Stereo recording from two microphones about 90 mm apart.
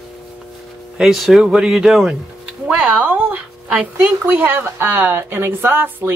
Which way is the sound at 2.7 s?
15° right (ahead or behind).